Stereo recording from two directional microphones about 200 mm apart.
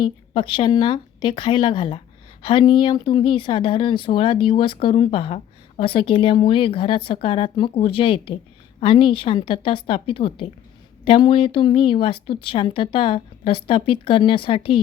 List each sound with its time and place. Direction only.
0.0 s speech: 25° left (ahead or behind)